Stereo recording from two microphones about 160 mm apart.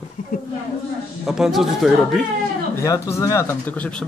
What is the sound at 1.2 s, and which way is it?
Speech, centre (ahead or behind).